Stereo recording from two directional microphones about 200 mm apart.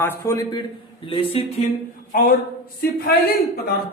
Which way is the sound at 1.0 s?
25° left (ahead or behind).